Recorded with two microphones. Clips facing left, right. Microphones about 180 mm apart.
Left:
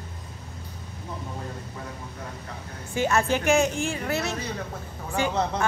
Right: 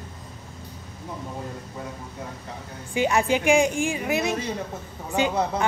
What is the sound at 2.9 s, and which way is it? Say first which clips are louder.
A woman's voice: right 2 dB; 15° right (ahead or behind).